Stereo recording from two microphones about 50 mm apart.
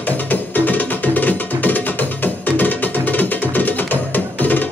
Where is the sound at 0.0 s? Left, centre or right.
Left.